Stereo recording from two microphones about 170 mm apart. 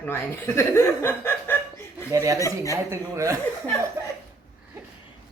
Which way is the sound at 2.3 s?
20° left (ahead or behind).